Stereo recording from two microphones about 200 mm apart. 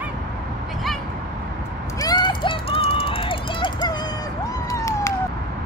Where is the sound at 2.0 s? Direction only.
20° left (ahead or behind).